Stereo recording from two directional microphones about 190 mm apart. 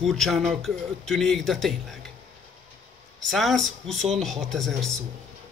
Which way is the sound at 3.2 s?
Centre (ahead or behind).